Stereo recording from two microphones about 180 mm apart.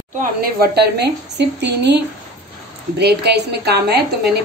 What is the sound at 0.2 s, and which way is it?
A woman's voice, 60° right (ahead or behind).